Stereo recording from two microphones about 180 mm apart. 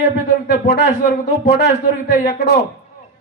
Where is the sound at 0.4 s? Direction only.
65° left (ahead or behind).